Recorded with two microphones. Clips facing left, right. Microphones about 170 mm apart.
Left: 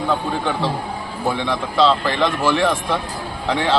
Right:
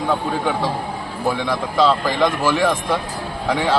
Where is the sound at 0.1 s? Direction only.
10° right (ahead or behind).